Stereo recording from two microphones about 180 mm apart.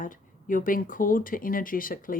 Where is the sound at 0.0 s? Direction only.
50° left (ahead or behind).